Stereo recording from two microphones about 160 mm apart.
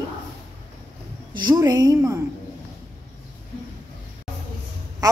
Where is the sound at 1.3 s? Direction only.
25° right (ahead or behind).